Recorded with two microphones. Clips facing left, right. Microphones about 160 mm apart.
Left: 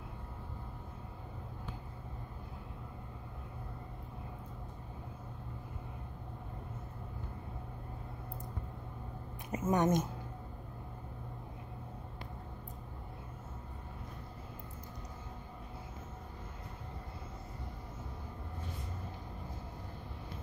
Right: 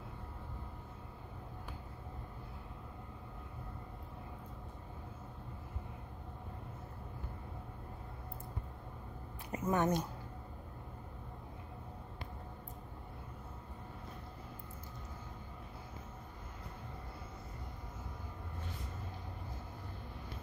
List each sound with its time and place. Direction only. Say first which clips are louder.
9.5 s speech: left 3 dB; 20° left (ahead or behind)